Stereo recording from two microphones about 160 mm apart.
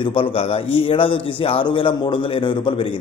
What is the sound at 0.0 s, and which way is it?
A man's voice, 35° left (ahead or behind).